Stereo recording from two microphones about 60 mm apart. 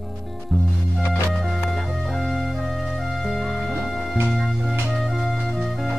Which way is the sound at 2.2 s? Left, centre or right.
Centre.